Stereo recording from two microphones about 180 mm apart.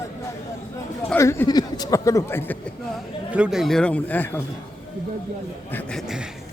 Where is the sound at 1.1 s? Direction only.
15° left (ahead or behind).